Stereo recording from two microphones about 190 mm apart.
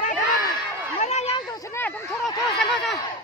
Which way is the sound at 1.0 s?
35° left (ahead or behind).